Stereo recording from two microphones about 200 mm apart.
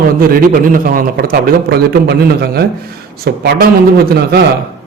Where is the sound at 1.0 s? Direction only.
45° right (ahead or behind).